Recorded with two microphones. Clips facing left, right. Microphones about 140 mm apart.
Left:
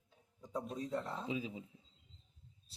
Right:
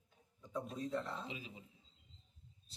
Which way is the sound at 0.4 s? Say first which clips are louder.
Left 1 dB; 35° left (ahead or behind).